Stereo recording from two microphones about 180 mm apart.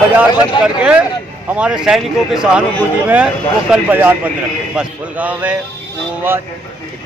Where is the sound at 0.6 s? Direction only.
25° left (ahead or behind).